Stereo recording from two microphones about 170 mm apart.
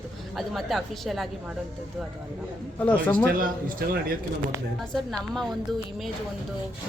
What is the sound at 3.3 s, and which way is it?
A man's voice, 55° right (ahead or behind).